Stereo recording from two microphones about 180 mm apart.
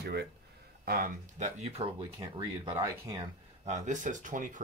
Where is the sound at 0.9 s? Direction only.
55° right (ahead or behind); by 2.8 s 30° right (ahead or behind).